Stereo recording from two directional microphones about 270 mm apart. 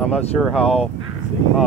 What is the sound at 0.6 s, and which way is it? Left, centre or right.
Speech, left.